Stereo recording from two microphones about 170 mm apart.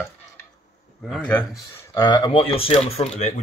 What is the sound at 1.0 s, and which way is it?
Speech, 5° left (ahead or behind).